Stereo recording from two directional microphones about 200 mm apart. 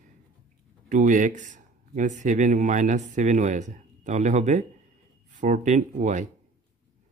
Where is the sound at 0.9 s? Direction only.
40° right (ahead or behind).